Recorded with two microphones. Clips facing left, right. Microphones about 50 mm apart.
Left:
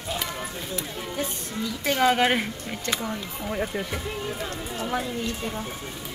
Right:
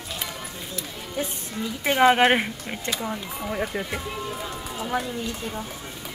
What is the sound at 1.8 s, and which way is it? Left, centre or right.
Speech, right.